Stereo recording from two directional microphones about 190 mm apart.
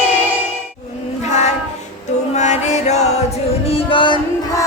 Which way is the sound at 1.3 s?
35° left (ahead or behind).